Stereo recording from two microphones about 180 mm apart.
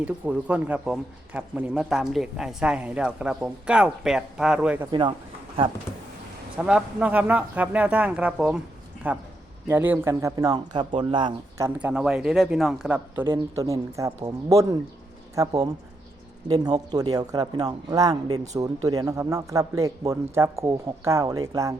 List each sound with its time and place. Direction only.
0.0 s a man's voice: 5° right (ahead or behind)
4.9 s speech: 25° right (ahead or behind)
6.6 s speech: 5° right (ahead or behind)